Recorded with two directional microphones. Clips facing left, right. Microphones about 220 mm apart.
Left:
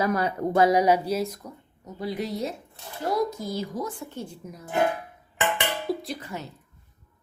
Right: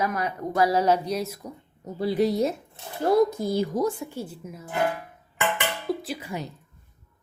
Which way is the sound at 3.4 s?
55° right (ahead or behind).